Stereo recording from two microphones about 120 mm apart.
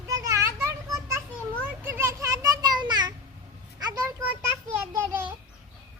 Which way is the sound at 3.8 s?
30° right (ahead or behind).